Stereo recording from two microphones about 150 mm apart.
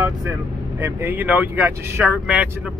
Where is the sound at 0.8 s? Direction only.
15° right (ahead or behind).